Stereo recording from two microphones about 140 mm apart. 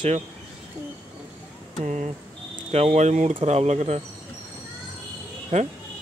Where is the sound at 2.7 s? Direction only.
50° right (ahead or behind).